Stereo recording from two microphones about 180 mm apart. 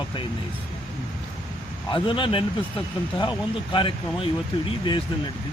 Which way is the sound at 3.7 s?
30° left (ahead or behind).